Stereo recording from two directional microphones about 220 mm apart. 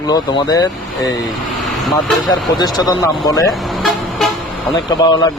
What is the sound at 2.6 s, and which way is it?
Speech, 15° left (ahead or behind).